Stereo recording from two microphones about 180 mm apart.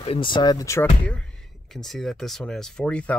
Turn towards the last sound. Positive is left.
turn(degrees=5)  # may be behind; listen again after turning